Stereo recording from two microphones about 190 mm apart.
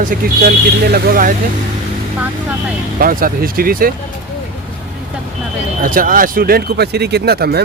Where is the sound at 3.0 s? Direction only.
50° right (ahead or behind).